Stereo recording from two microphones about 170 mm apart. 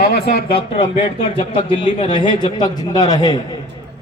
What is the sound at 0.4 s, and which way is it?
A man's voice, 30° left (ahead or behind).